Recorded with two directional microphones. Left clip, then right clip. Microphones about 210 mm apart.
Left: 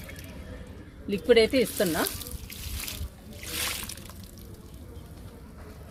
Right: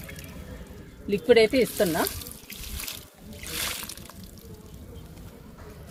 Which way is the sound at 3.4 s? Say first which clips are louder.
Even; centre (ahead or behind).